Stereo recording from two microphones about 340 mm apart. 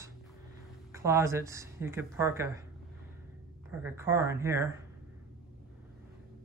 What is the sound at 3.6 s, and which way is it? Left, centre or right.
Speech, centre.